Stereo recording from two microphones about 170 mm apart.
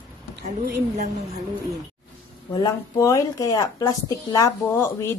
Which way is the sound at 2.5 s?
20° left (ahead or behind).